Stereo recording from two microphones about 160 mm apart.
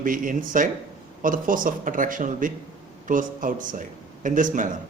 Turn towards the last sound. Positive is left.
turn(degrees=-55)  # may be behind; listen again after turning